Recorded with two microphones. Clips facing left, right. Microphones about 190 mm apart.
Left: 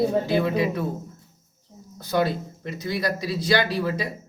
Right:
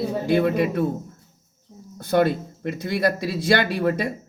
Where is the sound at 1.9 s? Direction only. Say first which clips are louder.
Right 4 dB; 55° right (ahead or behind).